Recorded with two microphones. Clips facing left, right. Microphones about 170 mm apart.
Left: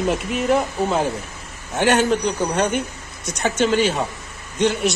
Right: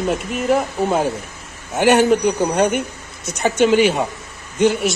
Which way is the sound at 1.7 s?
10° right (ahead or behind).